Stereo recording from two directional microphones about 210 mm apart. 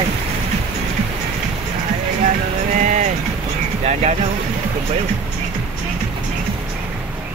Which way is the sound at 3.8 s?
30° right (ahead or behind).